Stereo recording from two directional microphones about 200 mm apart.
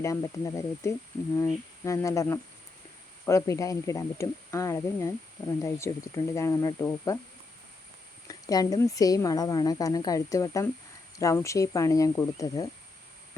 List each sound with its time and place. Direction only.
0.0 s a woman's voice: 15° left (ahead or behind)
8.3 s a woman's voice: 20° left (ahead or behind)